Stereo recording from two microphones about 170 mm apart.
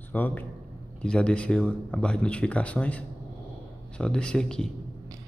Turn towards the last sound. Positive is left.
turn(degrees=5)  # may be behind; listen again after turning